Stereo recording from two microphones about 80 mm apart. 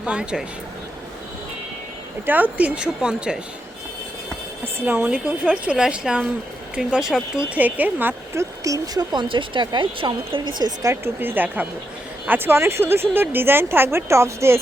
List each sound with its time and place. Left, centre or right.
0.0 s speech: centre
2.2 s speech: right
4.6 s speech: right
5.5 s speech: centre
7.5 s speech: right
8.4 s speech: right
9.1 s a woman's voice: right
11.0 s speech: right